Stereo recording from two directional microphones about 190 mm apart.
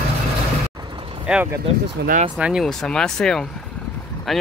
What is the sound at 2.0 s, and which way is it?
Speech, 60° right (ahead or behind).